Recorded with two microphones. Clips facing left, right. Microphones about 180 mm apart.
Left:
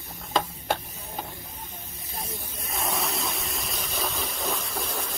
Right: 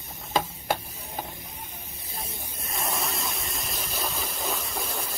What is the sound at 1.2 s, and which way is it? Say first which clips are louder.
Hiss: even; 20° right (ahead or behind).